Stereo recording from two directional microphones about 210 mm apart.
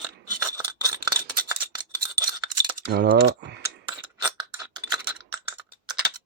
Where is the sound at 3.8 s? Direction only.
20° right (ahead or behind).